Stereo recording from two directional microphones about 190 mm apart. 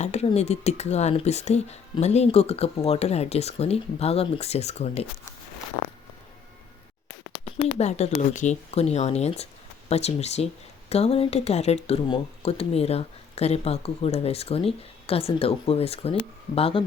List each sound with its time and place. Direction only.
0.0 s speech: 35° left (ahead or behind)
7.6 s speech: 30° left (ahead or behind)